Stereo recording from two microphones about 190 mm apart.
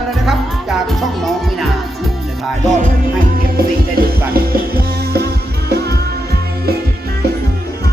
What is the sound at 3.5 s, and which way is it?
Music, 50° right (ahead or behind).